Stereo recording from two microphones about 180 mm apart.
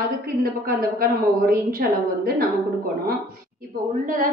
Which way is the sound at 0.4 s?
55° right (ahead or behind).